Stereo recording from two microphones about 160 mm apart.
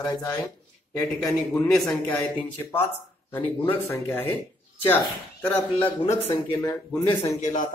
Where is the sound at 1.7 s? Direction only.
10° left (ahead or behind).